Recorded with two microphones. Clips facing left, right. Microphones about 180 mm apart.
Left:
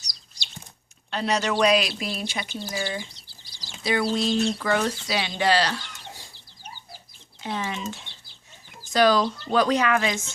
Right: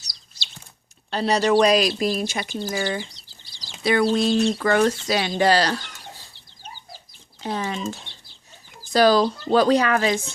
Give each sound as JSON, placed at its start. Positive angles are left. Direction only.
{"t": 1.1, "sound": "speech", "side_deg": -35}
{"t": 7.4, "sound": "speech", "side_deg": -40}
{"t": 8.9, "sound": "speech", "side_deg": -35}